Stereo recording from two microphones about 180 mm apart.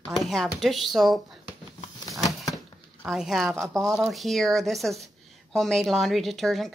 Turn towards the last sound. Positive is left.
turn(degrees=0)  # may be behind; listen again after turning